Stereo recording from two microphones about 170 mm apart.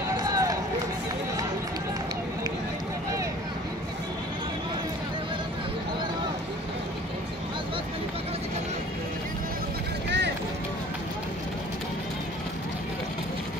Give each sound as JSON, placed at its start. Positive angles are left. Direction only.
{"t": 0.2, "sound": "run", "side_deg": -20}
{"t": 10.0, "sound": "run", "side_deg": -90}